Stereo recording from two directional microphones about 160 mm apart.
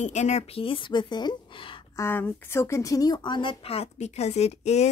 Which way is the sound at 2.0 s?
10° left (ahead or behind).